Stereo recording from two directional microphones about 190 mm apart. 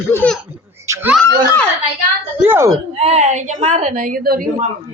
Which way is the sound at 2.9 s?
30° right (ahead or behind).